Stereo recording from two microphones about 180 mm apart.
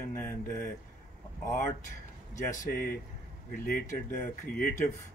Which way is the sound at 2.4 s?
55° left (ahead or behind).